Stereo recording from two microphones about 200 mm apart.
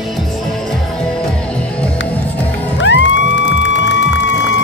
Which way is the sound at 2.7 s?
65° left (ahead or behind).